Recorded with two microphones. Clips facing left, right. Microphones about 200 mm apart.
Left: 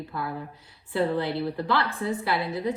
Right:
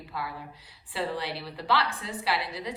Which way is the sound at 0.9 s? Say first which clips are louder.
Left 7 dB; 50° left (ahead or behind).